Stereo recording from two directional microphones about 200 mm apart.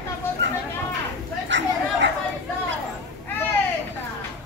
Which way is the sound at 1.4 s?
65° right (ahead or behind).